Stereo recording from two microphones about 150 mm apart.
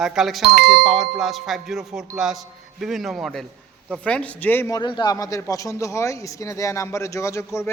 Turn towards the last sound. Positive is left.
turn(degrees=20)  # may be behind; listen again after turning